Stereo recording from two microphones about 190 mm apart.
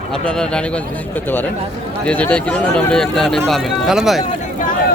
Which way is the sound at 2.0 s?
5° left (ahead or behind).